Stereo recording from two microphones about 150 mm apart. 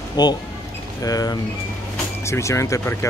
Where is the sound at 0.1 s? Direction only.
30° left (ahead or behind).